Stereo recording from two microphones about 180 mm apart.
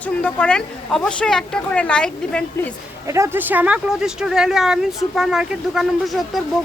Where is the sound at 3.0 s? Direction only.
15° right (ahead or behind); by 6.4 s centre (ahead or behind).